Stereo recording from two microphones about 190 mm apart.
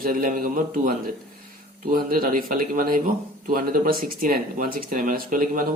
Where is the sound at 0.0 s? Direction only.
50° right (ahead or behind).